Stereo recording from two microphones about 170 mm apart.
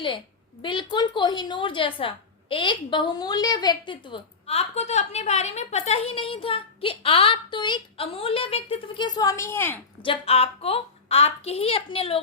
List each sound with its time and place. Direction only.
0.6 s a woman's voice: 30° left (ahead or behind)
10.0 s a woman's voice: 35° left (ahead or behind)